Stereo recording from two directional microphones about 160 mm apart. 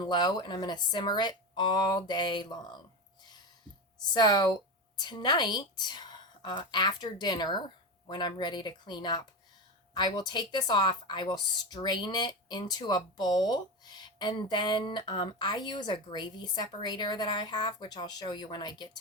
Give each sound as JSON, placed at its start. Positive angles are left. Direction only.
{"t": 0.0, "sound": "speech", "side_deg": 25}
{"t": 4.1, "sound": "speech", "side_deg": 25}